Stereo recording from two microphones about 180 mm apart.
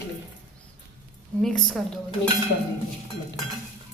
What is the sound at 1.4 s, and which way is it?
Speech, 5° left (ahead or behind).